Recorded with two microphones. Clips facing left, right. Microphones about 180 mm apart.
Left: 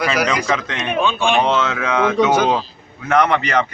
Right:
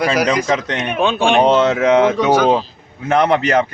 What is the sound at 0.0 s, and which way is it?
A man's voice, 45° right (ahead or behind).